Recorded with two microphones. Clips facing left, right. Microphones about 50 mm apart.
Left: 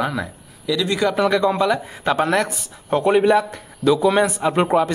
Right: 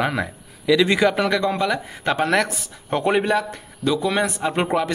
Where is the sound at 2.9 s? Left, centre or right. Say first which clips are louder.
Left 4 dB; right.